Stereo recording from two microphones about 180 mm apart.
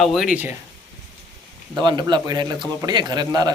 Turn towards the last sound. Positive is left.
turn(degrees=-20)  # may be behind; listen again after turning